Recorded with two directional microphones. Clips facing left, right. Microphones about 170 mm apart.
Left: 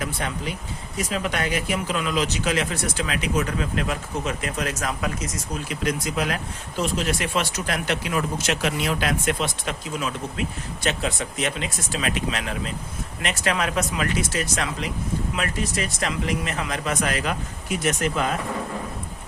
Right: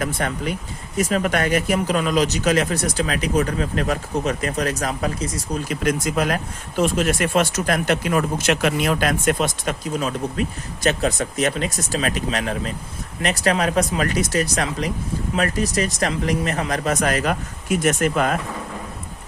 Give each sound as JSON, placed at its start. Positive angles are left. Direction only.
{"t": 0.0, "sound": "speech", "side_deg": -50}
{"t": 5.6, "sound": "speech", "side_deg": -50}